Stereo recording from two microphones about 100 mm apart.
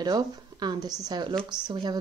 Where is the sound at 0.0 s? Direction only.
45° right (ahead or behind).